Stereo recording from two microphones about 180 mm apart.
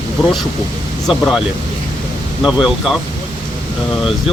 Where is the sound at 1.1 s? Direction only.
Centre (ahead or behind).